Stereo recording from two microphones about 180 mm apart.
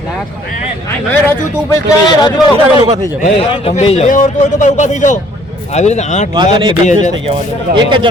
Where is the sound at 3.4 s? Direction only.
30° left (ahead or behind).